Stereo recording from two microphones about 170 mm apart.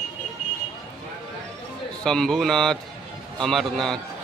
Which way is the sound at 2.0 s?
5° left (ahead or behind).